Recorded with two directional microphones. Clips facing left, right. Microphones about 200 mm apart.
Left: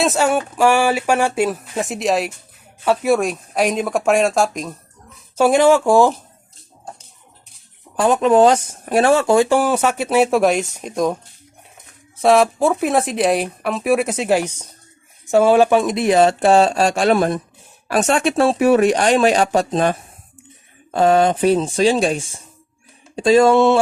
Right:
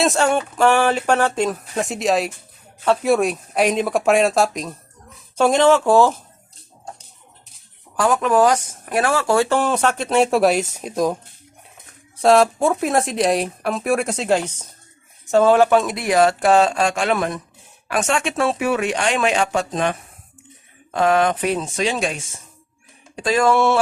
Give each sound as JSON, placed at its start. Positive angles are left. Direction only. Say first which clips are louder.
{"t": 0.0, "sound": "speech", "louder": "left 1 dB", "side_deg": 5}
{"t": 7.9, "sound": "speech", "louder": "left 3 dB", "side_deg": 20}